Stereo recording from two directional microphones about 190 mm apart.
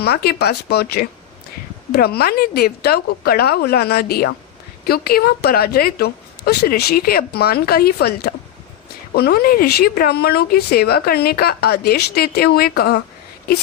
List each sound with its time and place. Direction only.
0.0 s speech: 55° left (ahead or behind)